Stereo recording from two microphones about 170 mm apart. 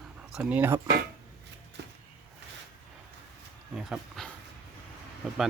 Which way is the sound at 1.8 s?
80° right.